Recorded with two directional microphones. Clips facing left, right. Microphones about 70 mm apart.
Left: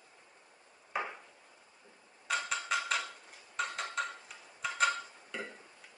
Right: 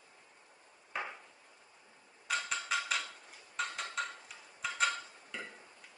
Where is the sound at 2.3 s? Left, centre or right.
Centre.